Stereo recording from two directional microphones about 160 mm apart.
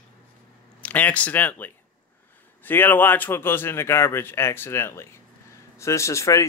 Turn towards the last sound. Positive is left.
turn(degrees=20)  # may be behind; listen again after turning